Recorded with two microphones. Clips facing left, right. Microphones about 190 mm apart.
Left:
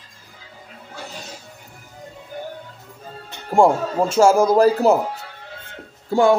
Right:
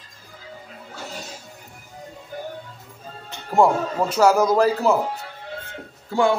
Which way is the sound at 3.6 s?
25° left (ahead or behind).